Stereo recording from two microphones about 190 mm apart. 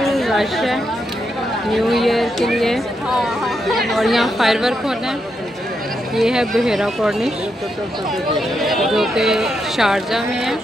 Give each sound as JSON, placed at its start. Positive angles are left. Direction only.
{"t": 0.0, "sound": "chatter", "side_deg": 0}
{"t": 1.7, "sound": "speech", "side_deg": 0}
{"t": 6.1, "sound": "speech", "side_deg": 0}
{"t": 8.4, "sound": "speech", "side_deg": 0}